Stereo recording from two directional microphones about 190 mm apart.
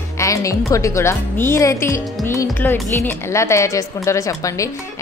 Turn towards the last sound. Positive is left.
turn(degrees=15)  # may be behind; listen again after turning